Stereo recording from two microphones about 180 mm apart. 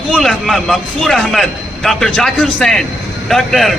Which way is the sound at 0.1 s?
5° left (ahead or behind).